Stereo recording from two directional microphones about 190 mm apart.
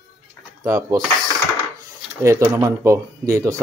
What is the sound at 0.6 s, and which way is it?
Speech, 15° right (ahead or behind).